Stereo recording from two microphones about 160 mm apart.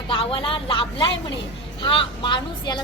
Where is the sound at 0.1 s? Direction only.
35° left (ahead or behind).